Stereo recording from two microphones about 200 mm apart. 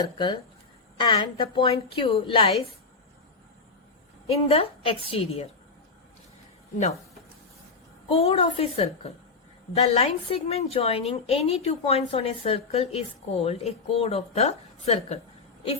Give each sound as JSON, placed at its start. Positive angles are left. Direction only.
{"t": 0.0, "sound": "a woman's voice", "side_deg": 20}
{"t": 4.3, "sound": "a woman's voice", "side_deg": 30}
{"t": 8.0, "sound": "a woman's voice", "side_deg": 30}